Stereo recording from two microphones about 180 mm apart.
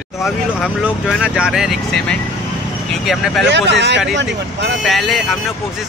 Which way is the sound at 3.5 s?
75° right (ahead or behind).